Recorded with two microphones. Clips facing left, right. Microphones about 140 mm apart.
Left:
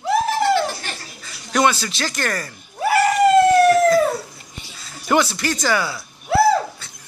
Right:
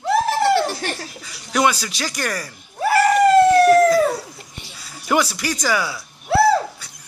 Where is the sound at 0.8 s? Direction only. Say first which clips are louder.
Right 6 dB; 65° right (ahead or behind).